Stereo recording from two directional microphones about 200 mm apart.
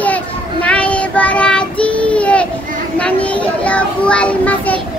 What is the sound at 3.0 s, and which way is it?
A child's voice, 5° left (ahead or behind).